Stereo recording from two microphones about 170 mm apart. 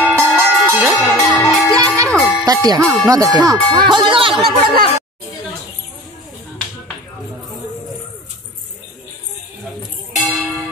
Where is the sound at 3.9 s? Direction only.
30° right (ahead or behind).